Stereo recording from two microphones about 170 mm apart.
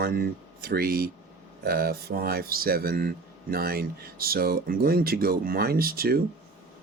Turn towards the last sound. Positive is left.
turn(degrees=-60)  # may be behind; listen again after turning